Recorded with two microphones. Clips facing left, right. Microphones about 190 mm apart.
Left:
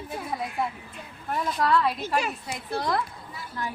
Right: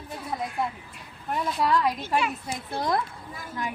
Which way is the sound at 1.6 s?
15° right (ahead or behind).